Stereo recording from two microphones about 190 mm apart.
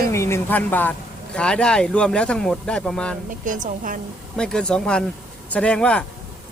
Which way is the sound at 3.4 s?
45° right (ahead or behind).